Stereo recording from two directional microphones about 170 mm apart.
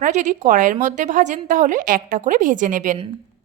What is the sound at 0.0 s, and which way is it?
A woman's voice, 50° right (ahead or behind).